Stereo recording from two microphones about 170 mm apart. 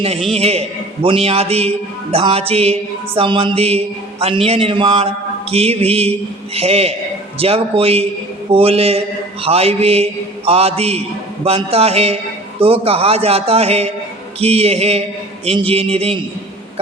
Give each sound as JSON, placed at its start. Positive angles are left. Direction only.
{"t": 0.0, "sound": "a man's voice", "side_deg": -35}